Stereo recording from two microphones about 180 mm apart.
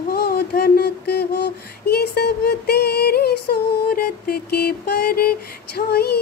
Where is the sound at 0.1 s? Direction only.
55° left (ahead or behind).